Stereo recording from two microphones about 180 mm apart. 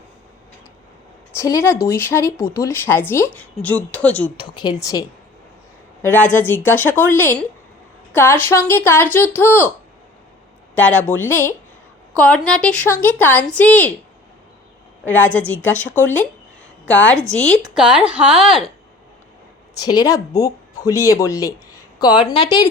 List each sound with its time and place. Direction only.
1.4 s speech: 15° left (ahead or behind)
4.4 s speech: 25° left (ahead or behind)
10.8 s speech: 5° left (ahead or behind)
15.0 s speech: 10° left (ahead or behind)
19.8 s speech: 20° left (ahead or behind)